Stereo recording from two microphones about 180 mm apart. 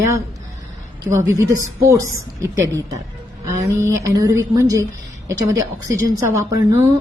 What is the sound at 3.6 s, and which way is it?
Speech, 15° right (ahead or behind).